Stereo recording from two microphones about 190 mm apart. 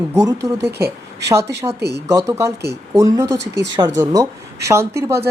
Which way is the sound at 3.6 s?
20° right (ahead or behind).